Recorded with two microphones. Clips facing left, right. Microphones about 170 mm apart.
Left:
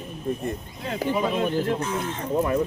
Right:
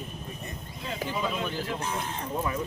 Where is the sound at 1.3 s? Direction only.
55° left (ahead or behind).